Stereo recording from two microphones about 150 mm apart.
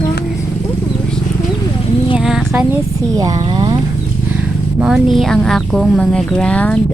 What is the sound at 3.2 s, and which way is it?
Speech, 25° right (ahead or behind).